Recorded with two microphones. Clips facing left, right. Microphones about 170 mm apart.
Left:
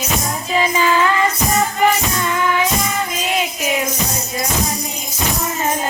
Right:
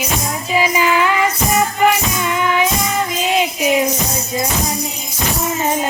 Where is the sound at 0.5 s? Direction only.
10° right (ahead or behind).